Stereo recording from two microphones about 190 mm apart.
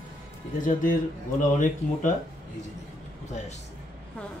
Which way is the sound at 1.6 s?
40° left (ahead or behind).